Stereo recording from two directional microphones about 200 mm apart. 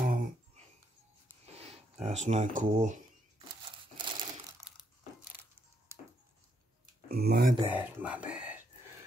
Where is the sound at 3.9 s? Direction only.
25° right (ahead or behind).